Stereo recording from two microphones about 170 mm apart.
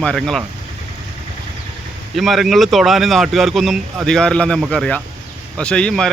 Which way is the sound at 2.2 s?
Centre (ahead or behind).